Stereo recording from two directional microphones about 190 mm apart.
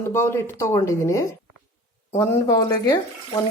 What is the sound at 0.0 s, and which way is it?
A woman's voice, 15° left (ahead or behind).